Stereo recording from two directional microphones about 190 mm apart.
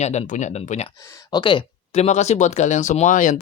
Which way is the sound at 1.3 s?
25° left (ahead or behind).